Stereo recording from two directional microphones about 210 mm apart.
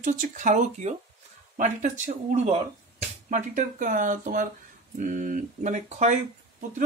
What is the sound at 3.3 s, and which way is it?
Speech, 35° right (ahead or behind).